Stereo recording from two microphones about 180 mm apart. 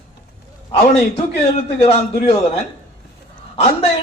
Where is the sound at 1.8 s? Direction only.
35° left (ahead or behind).